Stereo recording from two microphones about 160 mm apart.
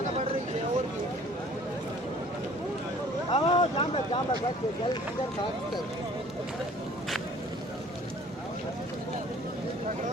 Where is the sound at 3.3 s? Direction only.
35° left (ahead or behind).